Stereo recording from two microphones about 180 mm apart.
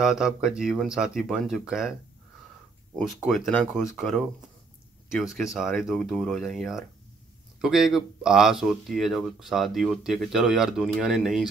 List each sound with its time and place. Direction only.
0.0 s speech: 5° right (ahead or behind)
3.0 s speech: centre (ahead or behind)